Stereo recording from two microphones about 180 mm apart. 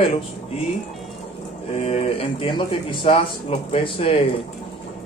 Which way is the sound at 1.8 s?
35° left (ahead or behind).